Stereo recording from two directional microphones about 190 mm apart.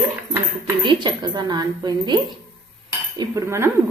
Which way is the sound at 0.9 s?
25° right (ahead or behind).